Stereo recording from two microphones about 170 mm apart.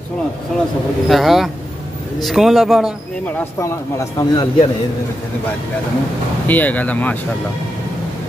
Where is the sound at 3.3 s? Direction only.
15° left (ahead or behind).